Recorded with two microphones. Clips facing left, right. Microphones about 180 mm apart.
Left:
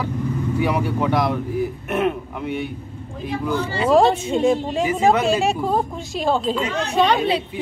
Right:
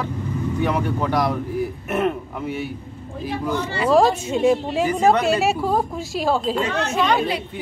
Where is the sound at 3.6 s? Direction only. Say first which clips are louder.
Left 1 dB; 25° left (ahead or behind).